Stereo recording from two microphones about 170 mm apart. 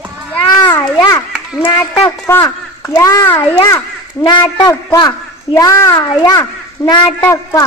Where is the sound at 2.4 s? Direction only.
15° left (ahead or behind).